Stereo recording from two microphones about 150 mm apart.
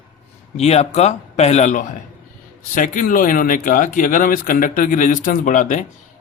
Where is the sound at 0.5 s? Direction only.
45° left (ahead or behind).